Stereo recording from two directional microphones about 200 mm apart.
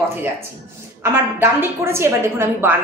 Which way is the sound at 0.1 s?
10° right (ahead or behind).